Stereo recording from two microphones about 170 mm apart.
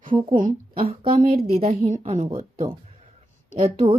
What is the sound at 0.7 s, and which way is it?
Speech, 30° right (ahead or behind).